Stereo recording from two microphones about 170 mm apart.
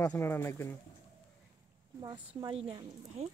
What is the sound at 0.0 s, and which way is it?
Speech, 15° left (ahead or behind).